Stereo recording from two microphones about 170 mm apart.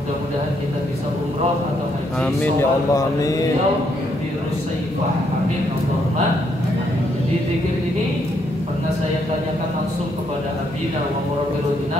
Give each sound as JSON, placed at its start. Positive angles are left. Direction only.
{"t": 2.9, "sound": "mantra", "side_deg": 20}